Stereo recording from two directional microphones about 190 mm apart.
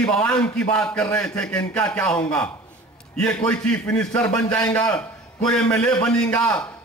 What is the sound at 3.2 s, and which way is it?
Speech, 5° left (ahead or behind).